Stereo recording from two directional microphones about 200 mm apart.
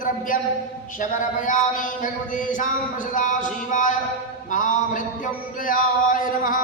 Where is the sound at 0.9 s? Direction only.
40° left (ahead or behind).